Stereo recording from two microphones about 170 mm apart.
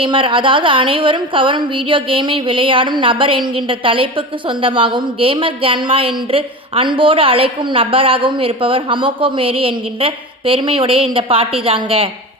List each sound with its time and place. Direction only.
0.0 s a woman's voice: 30° right (ahead or behind)